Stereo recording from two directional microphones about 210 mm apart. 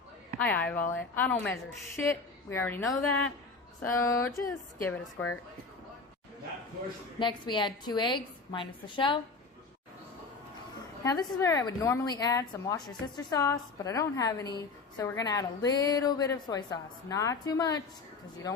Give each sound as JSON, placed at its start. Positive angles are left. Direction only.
{"t": 0.3, "sound": "a woman's voice", "side_deg": 5}
{"t": 3.8, "sound": "a woman's voice", "side_deg": 15}
{"t": 7.2, "sound": "a woman's voice", "side_deg": 20}
{"t": 11.0, "sound": "a woman's voice", "side_deg": 15}